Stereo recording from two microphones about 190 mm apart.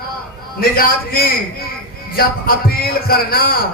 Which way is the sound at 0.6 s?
50° left (ahead or behind).